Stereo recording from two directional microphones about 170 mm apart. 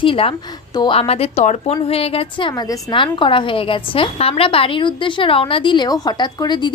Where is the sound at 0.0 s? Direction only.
30° left (ahead or behind).